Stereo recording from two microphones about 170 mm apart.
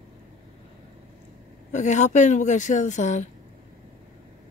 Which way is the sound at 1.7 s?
45° left (ahead or behind).